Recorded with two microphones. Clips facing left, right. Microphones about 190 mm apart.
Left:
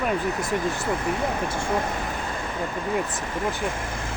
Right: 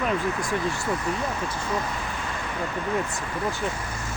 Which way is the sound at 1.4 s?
25° left (ahead or behind).